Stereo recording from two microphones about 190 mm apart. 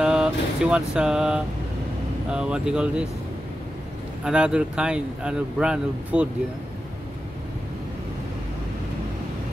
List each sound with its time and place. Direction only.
0.0 s a sound: 5° right (ahead or behind)
2.3 s speech: 5° right (ahead or behind)
4.2 s speech: 5° right (ahead or behind)